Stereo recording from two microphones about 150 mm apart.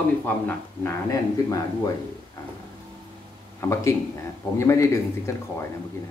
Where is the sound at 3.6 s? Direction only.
20° left (ahead or behind).